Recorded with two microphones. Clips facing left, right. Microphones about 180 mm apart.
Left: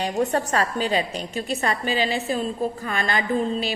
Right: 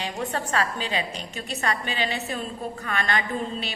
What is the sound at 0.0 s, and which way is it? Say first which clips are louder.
A woman's voice: left 7 dB; 45° left (ahead or behind).